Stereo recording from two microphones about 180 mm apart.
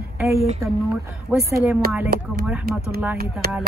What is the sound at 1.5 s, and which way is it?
Speech, 15° right (ahead or behind).